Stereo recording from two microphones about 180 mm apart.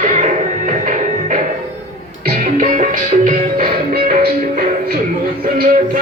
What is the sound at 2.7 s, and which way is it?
Music, 45° right (ahead or behind).